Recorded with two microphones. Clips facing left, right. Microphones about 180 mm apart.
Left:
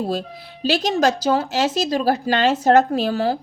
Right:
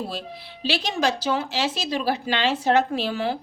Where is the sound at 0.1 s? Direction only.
45° left (ahead or behind).